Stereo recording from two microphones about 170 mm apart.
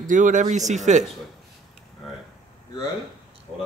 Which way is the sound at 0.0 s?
50° right (ahead or behind).